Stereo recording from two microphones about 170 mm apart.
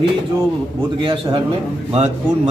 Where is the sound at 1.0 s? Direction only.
30° right (ahead or behind).